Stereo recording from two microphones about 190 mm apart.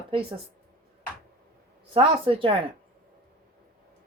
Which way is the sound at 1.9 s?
30° right (ahead or behind).